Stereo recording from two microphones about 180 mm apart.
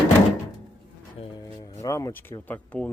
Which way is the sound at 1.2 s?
30° left (ahead or behind).